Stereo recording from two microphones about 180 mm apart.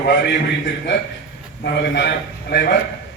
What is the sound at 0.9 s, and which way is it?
Speech, 90° left.